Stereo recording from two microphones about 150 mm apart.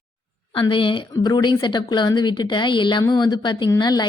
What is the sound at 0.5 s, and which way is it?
A woman's voice, 35° left (ahead or behind).